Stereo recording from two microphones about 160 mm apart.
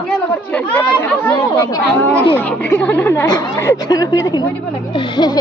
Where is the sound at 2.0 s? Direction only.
15° left (ahead or behind).